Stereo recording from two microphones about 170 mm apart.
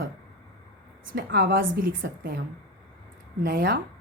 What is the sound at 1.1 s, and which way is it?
A woman's voice, 65° right (ahead or behind).